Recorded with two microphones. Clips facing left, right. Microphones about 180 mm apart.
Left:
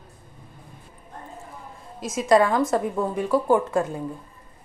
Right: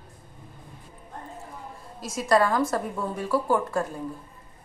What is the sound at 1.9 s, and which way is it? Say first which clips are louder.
Speech: left 4 dB; 20° left (ahead or behind).